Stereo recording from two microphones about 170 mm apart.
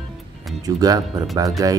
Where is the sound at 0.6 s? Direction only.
20° right (ahead or behind).